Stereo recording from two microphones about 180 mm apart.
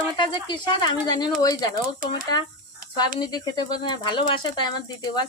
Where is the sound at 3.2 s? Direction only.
25° left (ahead or behind).